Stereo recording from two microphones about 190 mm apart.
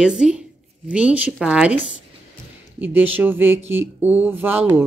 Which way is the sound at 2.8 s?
10° right (ahead or behind).